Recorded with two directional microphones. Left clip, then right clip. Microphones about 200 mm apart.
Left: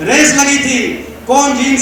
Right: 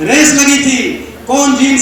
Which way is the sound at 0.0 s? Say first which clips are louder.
Right 1 dB; 55° left (ahead or behind).